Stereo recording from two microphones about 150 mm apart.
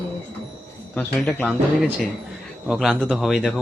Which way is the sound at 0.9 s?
10° left (ahead or behind).